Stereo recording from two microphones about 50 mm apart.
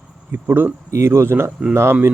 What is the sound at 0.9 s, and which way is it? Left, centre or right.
Speech, right.